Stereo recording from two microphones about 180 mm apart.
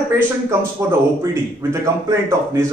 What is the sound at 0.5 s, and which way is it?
A man's voice, 15° right (ahead or behind).